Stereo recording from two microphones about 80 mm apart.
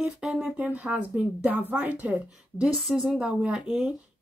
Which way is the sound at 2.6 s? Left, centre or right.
Centre.